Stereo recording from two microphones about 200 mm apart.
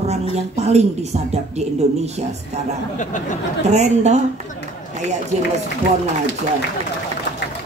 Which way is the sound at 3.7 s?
35° right (ahead or behind).